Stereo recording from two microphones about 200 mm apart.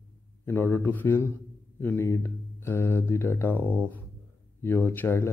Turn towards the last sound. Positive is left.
turn(degrees=10)  # may be behind; listen again after turning